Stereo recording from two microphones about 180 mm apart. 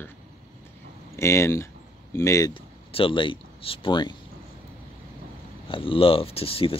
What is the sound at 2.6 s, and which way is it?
Speech, 30° left (ahead or behind).